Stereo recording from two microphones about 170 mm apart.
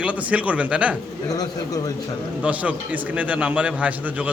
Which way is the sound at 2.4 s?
10° right (ahead or behind).